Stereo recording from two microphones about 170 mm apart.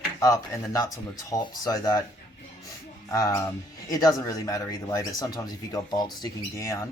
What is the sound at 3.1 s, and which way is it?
Speech, 20° left (ahead or behind).